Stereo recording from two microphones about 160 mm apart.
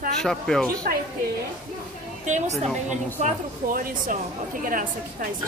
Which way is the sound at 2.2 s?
45° right (ahead or behind).